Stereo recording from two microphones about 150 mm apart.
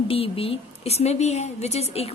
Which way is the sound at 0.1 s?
40° left (ahead or behind).